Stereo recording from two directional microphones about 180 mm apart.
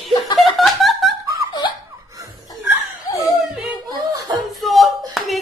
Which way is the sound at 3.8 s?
20° right (ahead or behind).